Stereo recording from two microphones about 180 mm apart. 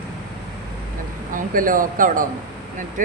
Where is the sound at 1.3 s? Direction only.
50° right (ahead or behind).